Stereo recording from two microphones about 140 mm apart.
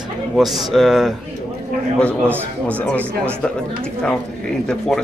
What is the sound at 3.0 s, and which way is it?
Speech, 15° right (ahead or behind).